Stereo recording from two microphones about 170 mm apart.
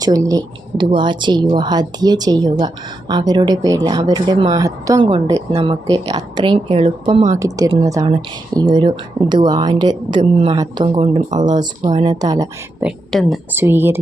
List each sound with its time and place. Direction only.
0.0 s speech: 20° right (ahead or behind); by 11.4 s 40° right (ahead or behind)
11.4 s speech: 25° right (ahead or behind)
12.8 s a woman's voice: centre (ahead or behind)
13.5 s a woman's voice: 15° right (ahead or behind)